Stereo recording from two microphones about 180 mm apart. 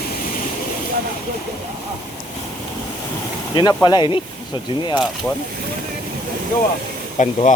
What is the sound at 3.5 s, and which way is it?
Speech, 25° left (ahead or behind).